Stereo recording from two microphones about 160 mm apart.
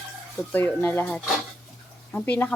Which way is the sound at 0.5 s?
10° left (ahead or behind).